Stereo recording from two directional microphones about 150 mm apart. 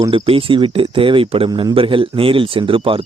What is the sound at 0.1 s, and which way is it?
Speech, 35° right (ahead or behind).